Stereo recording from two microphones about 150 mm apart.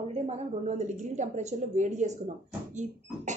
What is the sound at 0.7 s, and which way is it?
A woman's voice, 50° right (ahead or behind).